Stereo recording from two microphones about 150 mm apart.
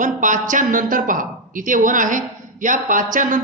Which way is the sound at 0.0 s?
60° right (ahead or behind).